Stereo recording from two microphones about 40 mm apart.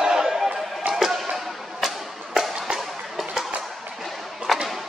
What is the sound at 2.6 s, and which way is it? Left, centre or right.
Music, centre.